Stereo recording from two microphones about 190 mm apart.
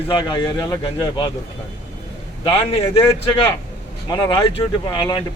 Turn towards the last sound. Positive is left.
turn(degrees=25)  # may be behind; listen again after turning